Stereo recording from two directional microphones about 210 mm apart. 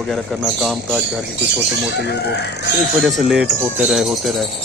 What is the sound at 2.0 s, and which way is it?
Speech, 50° left (ahead or behind).